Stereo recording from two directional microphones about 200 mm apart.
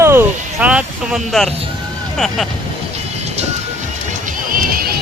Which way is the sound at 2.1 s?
Centre (ahead or behind).